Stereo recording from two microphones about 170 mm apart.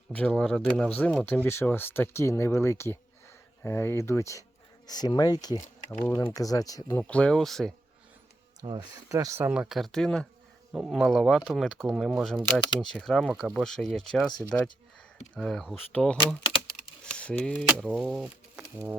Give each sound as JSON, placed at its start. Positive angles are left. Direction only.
{"t": 0.1, "sound": "speech", "side_deg": 5}
{"t": 6.9, "sound": "speech", "side_deg": 5}
{"t": 8.6, "sound": "speech", "side_deg": -25}